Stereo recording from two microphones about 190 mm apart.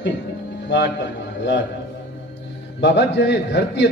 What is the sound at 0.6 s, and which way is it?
A man's voice, 65° left (ahead or behind).